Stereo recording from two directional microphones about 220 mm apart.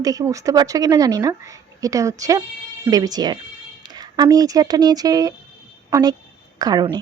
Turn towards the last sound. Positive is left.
turn(degrees=-20)  # may be behind; listen again after turning